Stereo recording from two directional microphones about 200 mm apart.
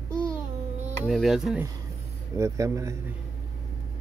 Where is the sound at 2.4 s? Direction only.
15° right (ahead or behind).